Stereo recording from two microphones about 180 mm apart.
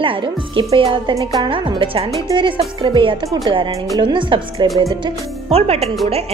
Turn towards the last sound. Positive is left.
turn(degrees=-35)  # may be behind; listen again after turning